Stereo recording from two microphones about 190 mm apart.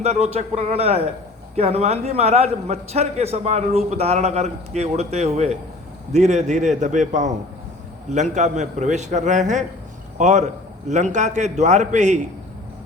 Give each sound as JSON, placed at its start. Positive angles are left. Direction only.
{"t": 0.0, "sound": "a man's voice", "side_deg": -35}